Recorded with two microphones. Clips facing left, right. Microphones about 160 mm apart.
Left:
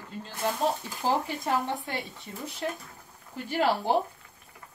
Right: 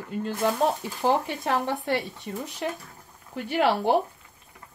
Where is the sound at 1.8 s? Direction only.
75° right (ahead or behind).